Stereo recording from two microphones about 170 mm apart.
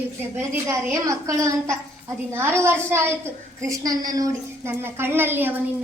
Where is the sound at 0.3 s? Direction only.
10° right (ahead or behind).